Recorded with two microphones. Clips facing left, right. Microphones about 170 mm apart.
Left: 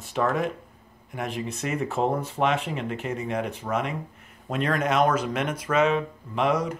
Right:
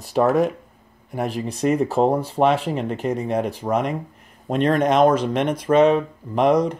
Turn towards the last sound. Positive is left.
turn(degrees=-35)  # may be behind; listen again after turning